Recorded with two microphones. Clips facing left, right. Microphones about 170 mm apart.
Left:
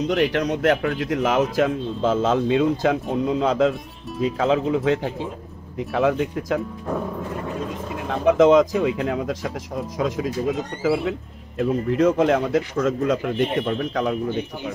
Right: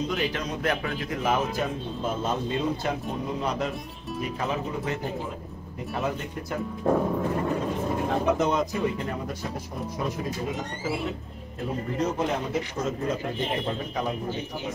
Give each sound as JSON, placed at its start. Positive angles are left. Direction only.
{"t": 0.0, "sound": "a man's voice", "side_deg": 70}
{"t": 8.4, "sound": "a man's voice", "side_deg": 90}